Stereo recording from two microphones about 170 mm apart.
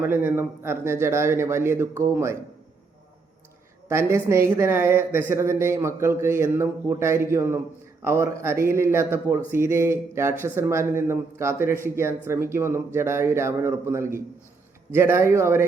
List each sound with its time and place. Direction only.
0.0 s a man's voice: 10° right (ahead or behind)
3.8 s a man's voice: 15° right (ahead or behind)